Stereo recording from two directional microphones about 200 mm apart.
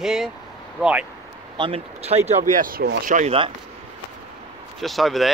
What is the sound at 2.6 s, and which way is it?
Speech, 50° right (ahead or behind).